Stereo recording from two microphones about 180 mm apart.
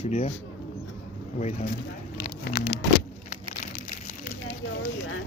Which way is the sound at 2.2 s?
60° left (ahead or behind).